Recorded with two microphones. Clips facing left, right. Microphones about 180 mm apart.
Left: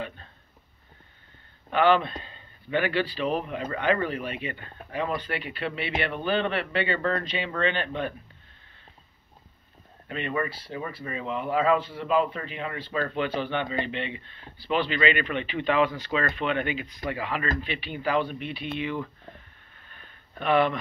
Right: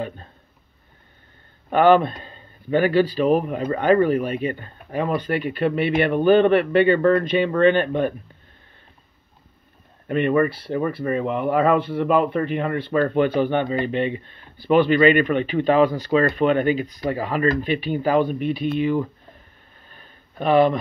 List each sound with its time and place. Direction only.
1.7 s speech: 45° right (ahead or behind)
10.0 s speech: 55° right (ahead or behind)
19.9 s a sound: 35° right (ahead or behind)